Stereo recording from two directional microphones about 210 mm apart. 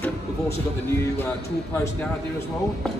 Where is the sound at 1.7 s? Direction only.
5° left (ahead or behind).